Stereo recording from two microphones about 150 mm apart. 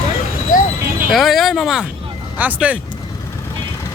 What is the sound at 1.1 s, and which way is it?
A man's voice, centre (ahead or behind).